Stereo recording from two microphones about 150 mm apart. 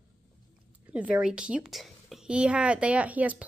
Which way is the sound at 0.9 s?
5° right (ahead or behind).